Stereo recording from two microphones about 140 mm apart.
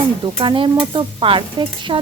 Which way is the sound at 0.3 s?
35° right (ahead or behind).